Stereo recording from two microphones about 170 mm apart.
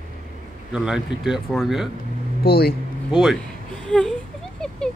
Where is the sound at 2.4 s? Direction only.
60° left (ahead or behind).